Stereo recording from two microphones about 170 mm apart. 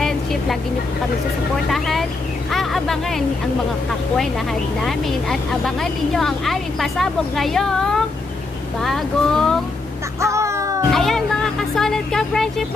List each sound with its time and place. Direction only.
0.0 s vehicle: centre (ahead or behind)
1.7 s vehicle: centre (ahead or behind)
2.5 s speech: centre (ahead or behind)
4.8 s a woman's voice: centre (ahead or behind)
10.2 s music: 15° right (ahead or behind)
10.9 s music: centre (ahead or behind)